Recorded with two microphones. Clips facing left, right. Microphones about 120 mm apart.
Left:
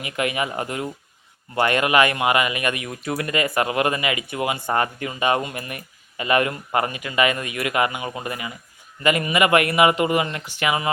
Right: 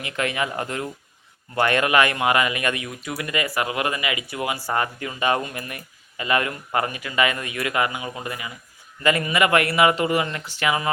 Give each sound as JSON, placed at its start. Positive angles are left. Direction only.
{"t": 0.0, "sound": "speech", "side_deg": 10}
{"t": 1.5, "sound": "speech", "side_deg": 20}
{"t": 2.8, "sound": "speech", "side_deg": 35}